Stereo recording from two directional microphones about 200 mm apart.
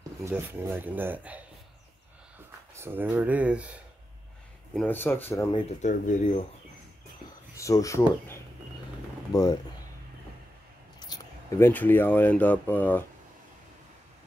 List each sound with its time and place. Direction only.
0.2 s speech: 10° right (ahead or behind)
2.7 s speech: 10° right (ahead or behind)
4.7 s speech: 10° left (ahead or behind)
5.5 s speech: 35° left (ahead or behind)
7.5 s speech: 15° left (ahead or behind)
9.3 s speech: 20° left (ahead or behind)
11.0 s speech: 15° left (ahead or behind)